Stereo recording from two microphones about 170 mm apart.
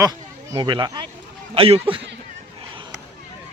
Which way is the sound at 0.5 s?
25° right (ahead or behind).